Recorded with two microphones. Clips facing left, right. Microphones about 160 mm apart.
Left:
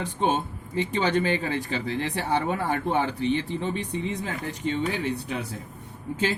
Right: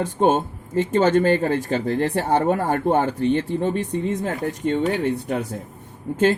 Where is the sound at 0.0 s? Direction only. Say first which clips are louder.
Right 7 dB; 45° right (ahead or behind).